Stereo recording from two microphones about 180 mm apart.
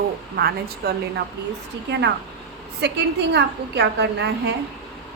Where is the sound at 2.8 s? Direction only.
70° right (ahead or behind).